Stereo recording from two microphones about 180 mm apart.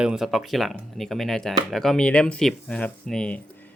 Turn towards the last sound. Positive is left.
turn(degrees=5)  # may be behind; listen again after turning